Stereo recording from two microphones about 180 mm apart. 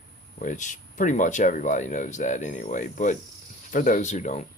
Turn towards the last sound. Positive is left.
turn(degrees=40)  # may be behind; listen again after turning